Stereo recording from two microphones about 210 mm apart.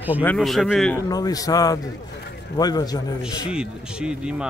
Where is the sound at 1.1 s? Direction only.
15° left (ahead or behind).